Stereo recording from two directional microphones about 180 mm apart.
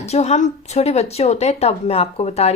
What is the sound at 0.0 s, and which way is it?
Speech, 35° left (ahead or behind).